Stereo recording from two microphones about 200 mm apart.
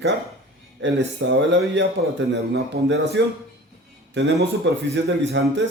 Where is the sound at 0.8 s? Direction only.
65° right (ahead or behind).